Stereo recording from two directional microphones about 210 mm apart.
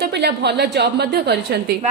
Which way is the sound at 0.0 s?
50° right (ahead or behind).